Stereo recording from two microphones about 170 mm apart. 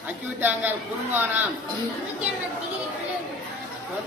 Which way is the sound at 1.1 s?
10° right (ahead or behind).